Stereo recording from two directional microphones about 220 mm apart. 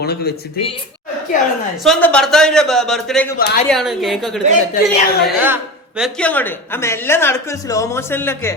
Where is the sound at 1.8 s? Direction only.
5° left (ahead or behind).